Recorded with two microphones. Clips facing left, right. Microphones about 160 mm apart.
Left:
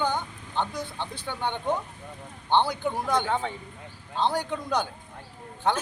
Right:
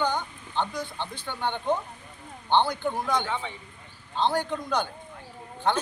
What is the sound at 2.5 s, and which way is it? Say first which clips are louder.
Speech: even; 5° left (ahead or behind).